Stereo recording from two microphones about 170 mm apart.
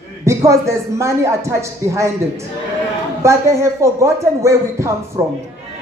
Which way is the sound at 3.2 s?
15° right (ahead or behind).